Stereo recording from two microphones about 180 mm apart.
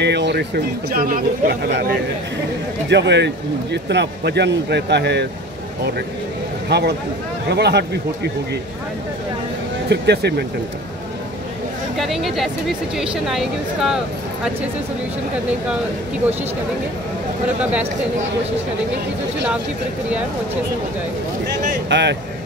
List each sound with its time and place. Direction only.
0.0 s speech: 70° right (ahead or behind); by 1.6 s 50° right (ahead or behind)
2.9 s speech: 70° right (ahead or behind)
6.7 s speech: 65° right (ahead or behind)
9.8 s speech: 65° right (ahead or behind)
12.0 s speech: centre (ahead or behind)
21.8 s speech: 80° right